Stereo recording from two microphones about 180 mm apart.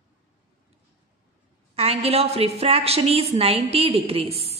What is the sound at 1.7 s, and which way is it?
A woman's voice, 35° right (ahead or behind).